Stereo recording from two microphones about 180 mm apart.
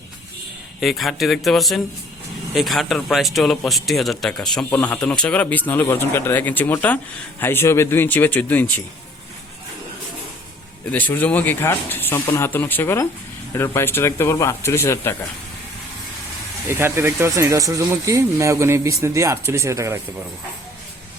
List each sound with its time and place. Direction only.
0.8 s speech: centre (ahead or behind)
10.9 s speech: 10° left (ahead or behind)
16.6 s speech: 15° right (ahead or behind)